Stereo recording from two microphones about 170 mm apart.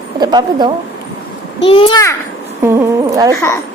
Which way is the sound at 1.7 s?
30° left (ahead or behind).